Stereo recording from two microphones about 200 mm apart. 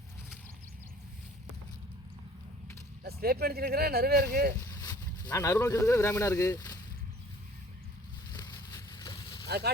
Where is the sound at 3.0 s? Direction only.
50° right (ahead or behind).